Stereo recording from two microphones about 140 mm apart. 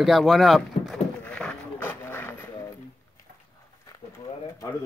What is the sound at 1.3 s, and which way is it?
Vehicle, 10° left (ahead or behind).